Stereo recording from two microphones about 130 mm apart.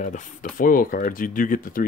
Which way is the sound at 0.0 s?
75° left (ahead or behind).